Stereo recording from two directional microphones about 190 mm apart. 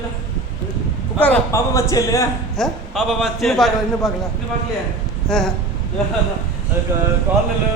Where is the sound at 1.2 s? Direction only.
10° left (ahead or behind).